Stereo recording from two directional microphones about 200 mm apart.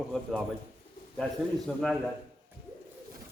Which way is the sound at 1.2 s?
Centre (ahead or behind).